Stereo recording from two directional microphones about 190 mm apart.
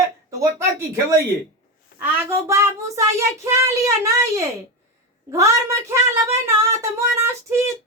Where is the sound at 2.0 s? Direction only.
15° right (ahead or behind).